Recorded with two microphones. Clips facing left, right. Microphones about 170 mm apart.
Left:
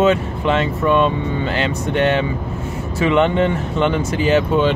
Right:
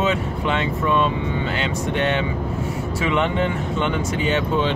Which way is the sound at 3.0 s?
40° left (ahead or behind).